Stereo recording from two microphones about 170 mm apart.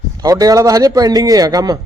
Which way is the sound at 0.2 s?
20° right (ahead or behind).